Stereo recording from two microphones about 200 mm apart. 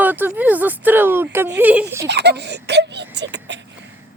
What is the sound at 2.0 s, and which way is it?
Speech, 55° right (ahead or behind).